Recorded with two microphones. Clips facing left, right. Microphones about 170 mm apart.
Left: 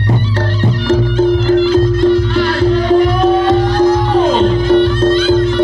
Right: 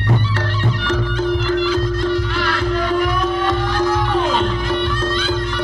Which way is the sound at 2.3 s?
30° left (ahead or behind).